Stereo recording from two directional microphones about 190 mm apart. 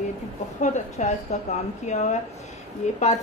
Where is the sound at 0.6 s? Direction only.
35° left (ahead or behind).